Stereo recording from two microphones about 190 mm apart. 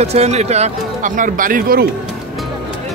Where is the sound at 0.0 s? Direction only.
35° right (ahead or behind).